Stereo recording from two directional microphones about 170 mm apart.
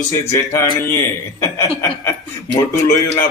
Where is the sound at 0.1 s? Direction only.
15° left (ahead or behind).